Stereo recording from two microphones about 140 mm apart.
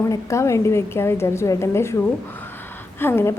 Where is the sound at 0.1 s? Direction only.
20° left (ahead or behind).